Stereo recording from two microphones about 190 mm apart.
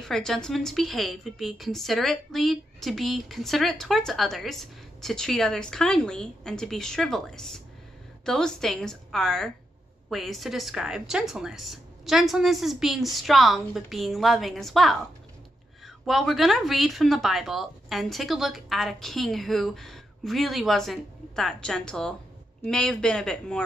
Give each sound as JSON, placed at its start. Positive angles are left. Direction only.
{"t": 0.0, "sound": "a woman's voice", "side_deg": 5}
{"t": 16.1, "sound": "a woman's voice", "side_deg": 0}